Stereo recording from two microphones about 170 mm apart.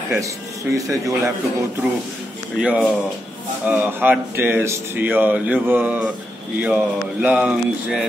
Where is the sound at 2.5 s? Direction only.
5° right (ahead or behind).